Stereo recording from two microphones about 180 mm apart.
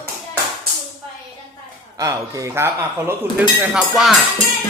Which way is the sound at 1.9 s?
20° right (ahead or behind).